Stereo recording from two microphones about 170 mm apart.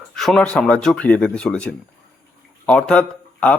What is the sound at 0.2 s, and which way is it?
Speech, 5° left (ahead or behind).